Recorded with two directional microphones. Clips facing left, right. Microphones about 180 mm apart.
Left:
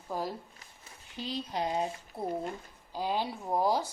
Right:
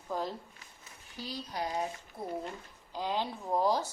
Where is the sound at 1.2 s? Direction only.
25° left (ahead or behind).